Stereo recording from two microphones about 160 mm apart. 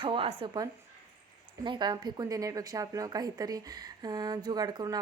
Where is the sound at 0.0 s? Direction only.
35° right (ahead or behind).